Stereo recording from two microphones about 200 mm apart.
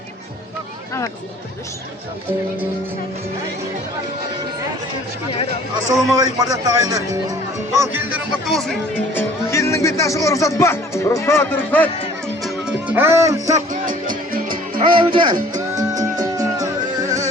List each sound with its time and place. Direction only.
5.9 s speech: 15° right (ahead or behind); by 9.2 s centre (ahead or behind)
9.5 s speech: 15° left (ahead or behind)
12.4 s music: centre (ahead or behind)
13.7 s music: 45° right (ahead or behind)
14.9 s speech: 25° right (ahead or behind)
15.7 s music: 15° right (ahead or behind)